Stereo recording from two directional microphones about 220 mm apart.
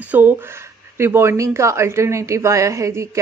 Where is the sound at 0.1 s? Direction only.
10° right (ahead or behind).